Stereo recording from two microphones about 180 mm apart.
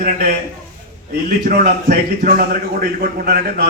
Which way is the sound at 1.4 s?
55° right (ahead or behind).